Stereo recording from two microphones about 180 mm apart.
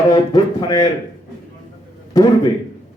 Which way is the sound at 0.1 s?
20° left (ahead or behind).